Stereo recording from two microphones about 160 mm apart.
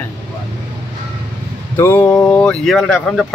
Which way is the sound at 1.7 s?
15° left (ahead or behind).